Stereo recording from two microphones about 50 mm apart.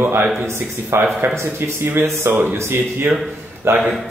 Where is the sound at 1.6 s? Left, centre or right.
Right.